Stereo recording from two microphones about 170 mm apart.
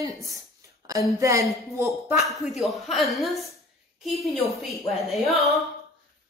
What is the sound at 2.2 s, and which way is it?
A woman's voice, centre (ahead or behind).